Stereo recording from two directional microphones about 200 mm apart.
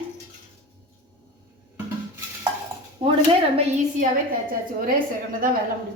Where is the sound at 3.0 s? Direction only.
25° right (ahead or behind).